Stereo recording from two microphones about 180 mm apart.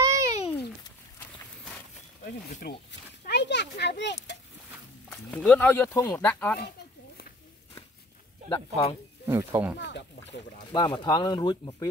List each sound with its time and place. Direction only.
0.0 s a sound: 15° right (ahead or behind)
2.6 s speech: 60° left (ahead or behind)
3.3 s a sound: 70° left (ahead or behind)
5.1 s speech: 5° left (ahead or behind)
8.5 s speech: 35° left (ahead or behind)
9.2 s speech: 15° right (ahead or behind)
9.8 s speech: 75° left (ahead or behind)
10.7 s speech: 25° left (ahead or behind)